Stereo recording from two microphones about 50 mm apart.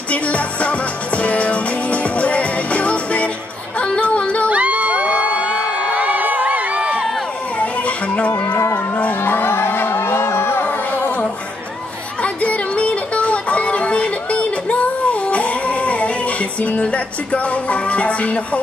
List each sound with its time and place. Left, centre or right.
0.1 s music: left
3.7 s a sound: left
4.5 s crowd: right
5.9 s music: right
7.5 s a sound: left
8.5 s a sound: left
9.2 s music: left
10.9 s music: left
12.2 s music: left